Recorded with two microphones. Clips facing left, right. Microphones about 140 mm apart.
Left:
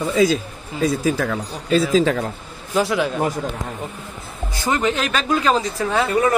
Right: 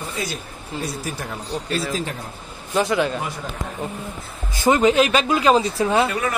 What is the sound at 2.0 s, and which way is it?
Speech, 90° left.